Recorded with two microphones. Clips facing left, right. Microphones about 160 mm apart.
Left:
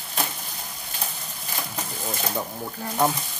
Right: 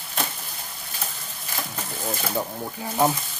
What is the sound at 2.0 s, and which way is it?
Speech, 5° right (ahead or behind).